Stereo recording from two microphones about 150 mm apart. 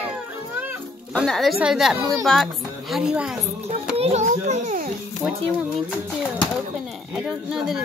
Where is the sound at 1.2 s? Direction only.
Centre (ahead or behind).